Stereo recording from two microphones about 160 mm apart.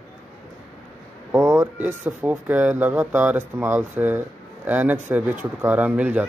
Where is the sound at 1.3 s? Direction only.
20° right (ahead or behind).